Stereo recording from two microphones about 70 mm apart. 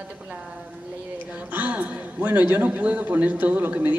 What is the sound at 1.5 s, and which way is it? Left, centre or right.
A woman's voice, right.